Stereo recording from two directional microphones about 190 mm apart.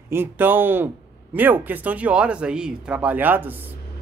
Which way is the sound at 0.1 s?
10° right (ahead or behind).